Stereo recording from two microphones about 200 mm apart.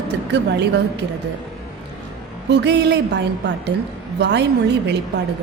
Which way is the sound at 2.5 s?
60° right (ahead or behind).